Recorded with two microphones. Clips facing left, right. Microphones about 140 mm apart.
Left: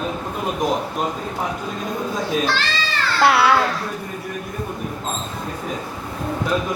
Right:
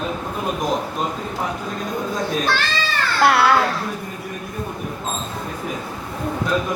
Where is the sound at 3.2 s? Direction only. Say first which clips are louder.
Even; centre (ahead or behind).